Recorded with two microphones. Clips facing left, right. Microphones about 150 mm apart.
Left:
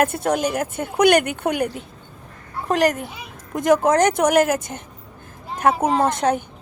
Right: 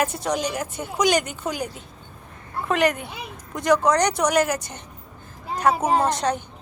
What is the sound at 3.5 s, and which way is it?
Speech, 50° left (ahead or behind).